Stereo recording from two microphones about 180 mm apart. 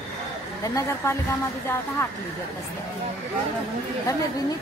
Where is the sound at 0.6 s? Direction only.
20° left (ahead or behind).